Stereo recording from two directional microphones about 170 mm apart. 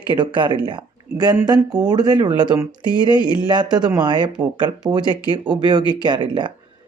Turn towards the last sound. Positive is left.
turn(degrees=-25)  # may be behind; listen again after turning